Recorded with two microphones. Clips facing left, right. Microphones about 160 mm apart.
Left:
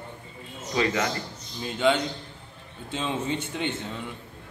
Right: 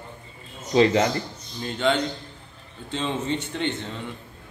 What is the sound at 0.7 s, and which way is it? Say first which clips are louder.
Speech: right 7 dB; 30° right (ahead or behind).